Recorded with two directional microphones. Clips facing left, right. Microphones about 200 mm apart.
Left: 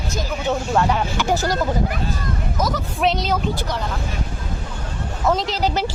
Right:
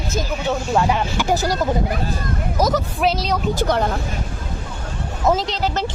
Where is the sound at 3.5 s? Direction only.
55° right (ahead or behind).